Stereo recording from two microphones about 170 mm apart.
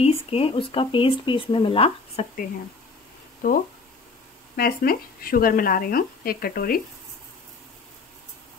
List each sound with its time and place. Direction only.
0.0 s speech: 35° left (ahead or behind)
3.4 s speech: 50° left (ahead or behind)
4.6 s speech: 60° left (ahead or behind)